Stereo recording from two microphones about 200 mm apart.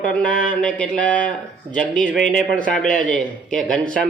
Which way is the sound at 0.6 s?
5° left (ahead or behind).